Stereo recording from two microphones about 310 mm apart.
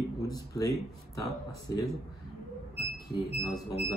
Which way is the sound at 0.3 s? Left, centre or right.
Centre.